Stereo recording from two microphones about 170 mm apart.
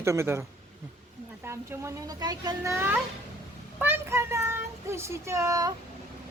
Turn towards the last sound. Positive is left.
turn(degrees=-20)  # may be behind; listen again after turning